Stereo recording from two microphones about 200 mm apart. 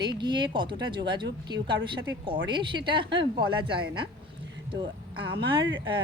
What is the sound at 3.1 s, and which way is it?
Speech, 60° right (ahead or behind).